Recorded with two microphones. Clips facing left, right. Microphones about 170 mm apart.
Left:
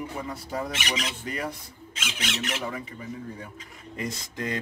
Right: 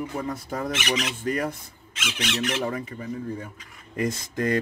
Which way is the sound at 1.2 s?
50° right (ahead or behind).